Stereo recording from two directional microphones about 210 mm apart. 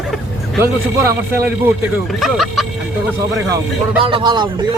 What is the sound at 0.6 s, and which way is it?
A man's voice, 10° right (ahead or behind).